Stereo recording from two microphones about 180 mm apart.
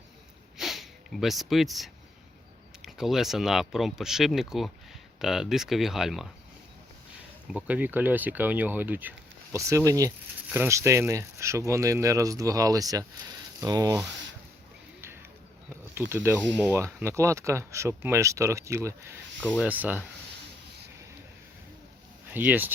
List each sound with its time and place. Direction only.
0.5 s sniff: centre (ahead or behind)
2.8 s speech: centre (ahead or behind)
7.5 s speech: 10° right (ahead or behind)
15.7 s insect: 15° right (ahead or behind)
16.6 s speech: 10° right (ahead or behind)
19.4 s speech: 5° left (ahead or behind)
19.6 s speech: 10° right (ahead or behind)
22.3 s speech: 10° right (ahead or behind)